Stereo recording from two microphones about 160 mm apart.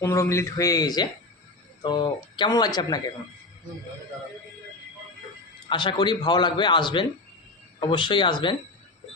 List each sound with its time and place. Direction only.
0.0 s a man's voice: 20° left (ahead or behind)
5.6 s a man's voice: 30° left (ahead or behind)